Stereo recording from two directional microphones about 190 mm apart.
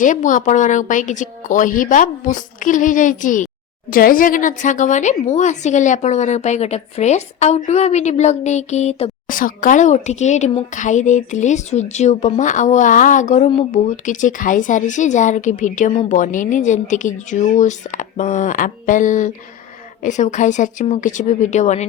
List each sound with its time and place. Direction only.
0.0 s a woman's voice: 40° left (ahead or behind)